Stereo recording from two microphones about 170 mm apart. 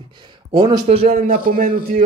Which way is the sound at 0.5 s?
30° right (ahead or behind).